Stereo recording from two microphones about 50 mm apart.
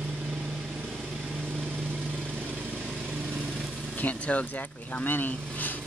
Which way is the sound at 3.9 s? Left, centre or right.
Left.